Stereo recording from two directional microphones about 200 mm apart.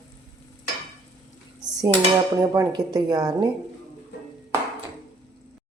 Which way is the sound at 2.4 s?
15° right (ahead or behind).